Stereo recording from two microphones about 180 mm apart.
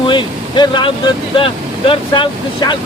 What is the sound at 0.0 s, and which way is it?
Speech, 25° left (ahead or behind).